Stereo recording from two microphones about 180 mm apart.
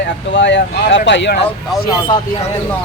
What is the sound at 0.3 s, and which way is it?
Speech, 80° left.